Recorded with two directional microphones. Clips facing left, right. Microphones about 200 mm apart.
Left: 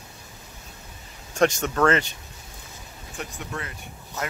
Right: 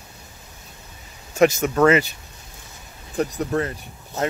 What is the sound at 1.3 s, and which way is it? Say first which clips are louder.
Speech: right 4 dB; 5° right (ahead or behind).